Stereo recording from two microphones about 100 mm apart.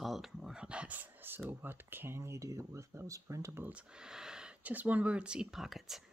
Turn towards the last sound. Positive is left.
turn(degrees=0)  # may be behind; listen again after turning